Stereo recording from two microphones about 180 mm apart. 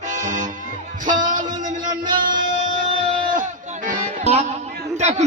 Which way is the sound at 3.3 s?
45° right (ahead or behind).